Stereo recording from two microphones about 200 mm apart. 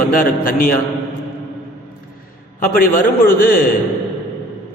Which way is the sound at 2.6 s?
45° left (ahead or behind).